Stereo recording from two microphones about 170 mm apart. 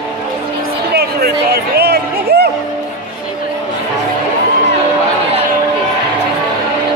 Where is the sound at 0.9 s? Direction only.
70° right (ahead or behind).